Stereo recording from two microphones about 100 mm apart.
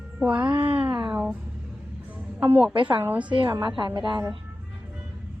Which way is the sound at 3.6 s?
50° right (ahead or behind).